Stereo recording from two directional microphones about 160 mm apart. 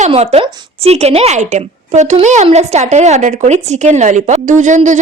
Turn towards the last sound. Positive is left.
turn(degrees=-50)  # may be behind; listen again after turning